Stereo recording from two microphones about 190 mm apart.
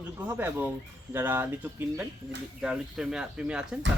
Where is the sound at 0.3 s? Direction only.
10° right (ahead or behind).